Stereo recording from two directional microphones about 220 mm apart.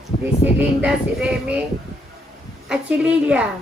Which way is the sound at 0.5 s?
5° right (ahead or behind).